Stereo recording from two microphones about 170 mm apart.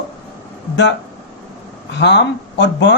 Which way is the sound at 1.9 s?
85° left.